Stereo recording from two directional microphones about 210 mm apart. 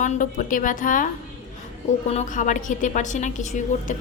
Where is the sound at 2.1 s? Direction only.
35° left (ahead or behind).